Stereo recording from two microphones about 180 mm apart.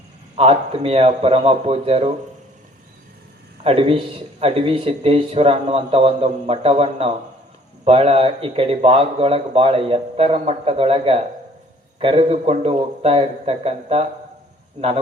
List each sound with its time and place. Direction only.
0.3 s speech: 30° right (ahead or behind)
3.6 s speech: 30° right (ahead or behind)